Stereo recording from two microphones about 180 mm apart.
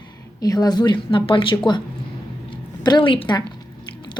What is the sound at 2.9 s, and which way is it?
Speech, 25° left (ahead or behind).